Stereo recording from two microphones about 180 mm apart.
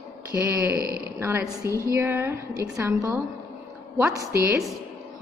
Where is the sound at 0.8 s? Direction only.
55° right (ahead or behind).